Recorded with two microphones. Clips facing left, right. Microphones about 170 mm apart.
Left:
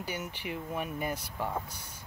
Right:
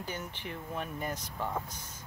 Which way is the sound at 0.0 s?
10° left (ahead or behind).